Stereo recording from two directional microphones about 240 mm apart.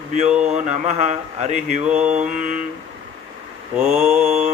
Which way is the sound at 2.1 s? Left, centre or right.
Right.